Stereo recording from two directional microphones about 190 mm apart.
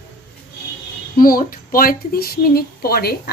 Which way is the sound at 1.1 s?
50° left (ahead or behind).